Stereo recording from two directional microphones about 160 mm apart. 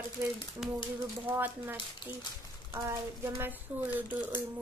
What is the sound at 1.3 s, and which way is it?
Speech, 10° right (ahead or behind).